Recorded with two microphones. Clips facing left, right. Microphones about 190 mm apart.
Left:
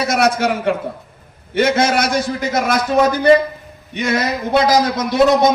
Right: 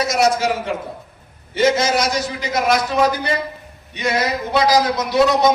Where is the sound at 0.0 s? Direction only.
60° left (ahead or behind).